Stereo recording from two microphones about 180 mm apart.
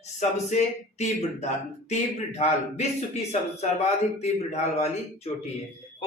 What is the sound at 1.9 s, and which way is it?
A man's voice, 40° left (ahead or behind).